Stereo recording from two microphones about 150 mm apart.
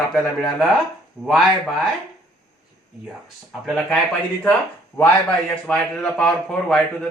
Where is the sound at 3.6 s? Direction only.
5° left (ahead or behind).